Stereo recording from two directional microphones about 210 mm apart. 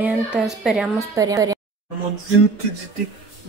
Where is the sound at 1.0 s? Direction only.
15° right (ahead or behind).